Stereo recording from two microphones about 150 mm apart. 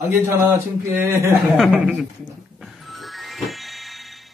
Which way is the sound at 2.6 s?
Centre (ahead or behind).